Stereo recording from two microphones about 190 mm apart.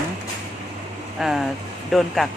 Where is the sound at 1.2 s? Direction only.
Centre (ahead or behind).